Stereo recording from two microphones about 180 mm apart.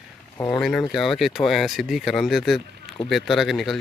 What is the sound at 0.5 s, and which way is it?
Speech, 5° left (ahead or behind).